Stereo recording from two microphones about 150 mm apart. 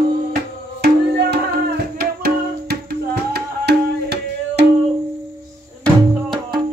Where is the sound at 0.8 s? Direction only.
90° right.